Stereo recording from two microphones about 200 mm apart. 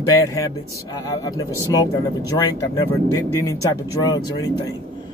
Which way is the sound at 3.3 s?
15° left (ahead or behind).